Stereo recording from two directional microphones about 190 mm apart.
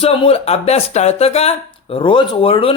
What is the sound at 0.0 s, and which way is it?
Speech, 30° left (ahead or behind).